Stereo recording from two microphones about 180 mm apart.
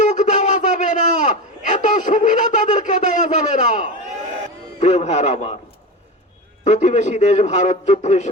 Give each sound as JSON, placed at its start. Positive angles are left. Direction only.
{"t": 0.0, "sound": "a sound", "side_deg": 40}
{"t": 4.8, "sound": "a man's voice", "side_deg": 40}
{"t": 6.7, "sound": "a man's voice", "side_deg": 40}